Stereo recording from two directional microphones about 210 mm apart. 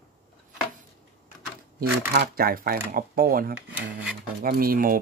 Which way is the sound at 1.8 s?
45° right (ahead or behind).